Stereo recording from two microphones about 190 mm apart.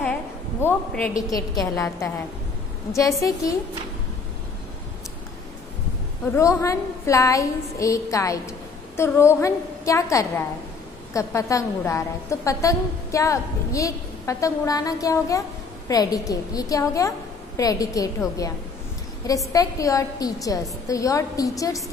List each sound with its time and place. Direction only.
0.0 s a sound: 10° left (ahead or behind)
1.3 s a woman's voice: 20° left (ahead or behind)
6.3 s a woman's voice: 15° left (ahead or behind)
19.5 s a woman's voice: 15° left (ahead or behind)